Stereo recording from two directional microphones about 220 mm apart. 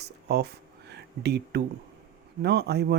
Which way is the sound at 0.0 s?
50° right (ahead or behind).